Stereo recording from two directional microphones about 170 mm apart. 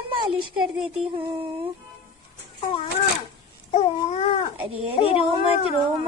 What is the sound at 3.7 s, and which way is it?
Babbling, 35° left (ahead or behind).